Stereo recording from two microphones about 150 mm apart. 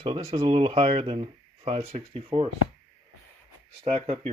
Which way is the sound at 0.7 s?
45° right (ahead or behind).